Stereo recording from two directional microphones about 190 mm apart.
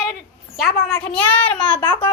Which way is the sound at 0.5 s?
Centre (ahead or behind).